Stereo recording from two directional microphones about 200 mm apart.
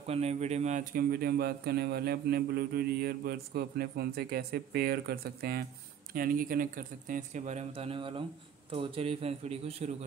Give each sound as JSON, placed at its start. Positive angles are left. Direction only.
{"t": 0.0, "sound": "speech", "side_deg": -30}